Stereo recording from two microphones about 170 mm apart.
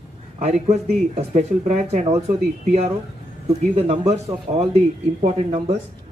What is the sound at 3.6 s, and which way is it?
Speech, 40° right (ahead or behind).